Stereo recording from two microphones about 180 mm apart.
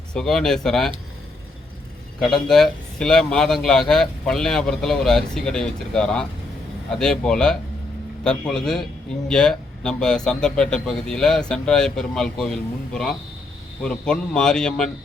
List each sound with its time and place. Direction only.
0.1 s speech: 5° left (ahead or behind)
2.2 s speech: 5° left (ahead or behind)